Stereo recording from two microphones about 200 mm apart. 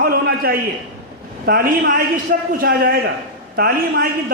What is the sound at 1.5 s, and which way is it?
A man's voice, 50° right (ahead or behind).